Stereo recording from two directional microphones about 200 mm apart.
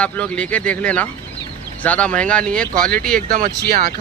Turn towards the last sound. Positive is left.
turn(degrees=-45)  # may be behind; listen again after turning